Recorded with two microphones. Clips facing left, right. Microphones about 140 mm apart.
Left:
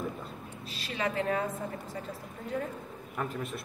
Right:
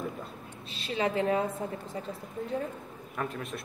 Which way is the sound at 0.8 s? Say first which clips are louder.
Right 3 dB; 30° right (ahead or behind).